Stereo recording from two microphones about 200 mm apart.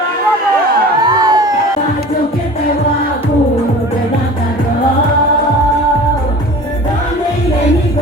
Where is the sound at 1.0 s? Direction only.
20° right (ahead or behind).